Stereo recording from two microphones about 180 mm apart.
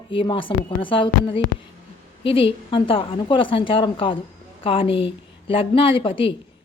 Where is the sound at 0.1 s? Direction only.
30° left (ahead or behind).